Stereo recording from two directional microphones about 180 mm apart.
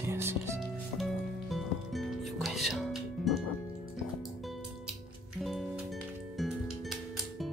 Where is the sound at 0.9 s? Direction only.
Centre (ahead or behind).